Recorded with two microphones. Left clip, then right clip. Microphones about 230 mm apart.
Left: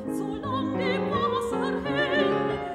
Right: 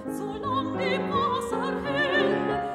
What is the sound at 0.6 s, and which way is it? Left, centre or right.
Opera, right.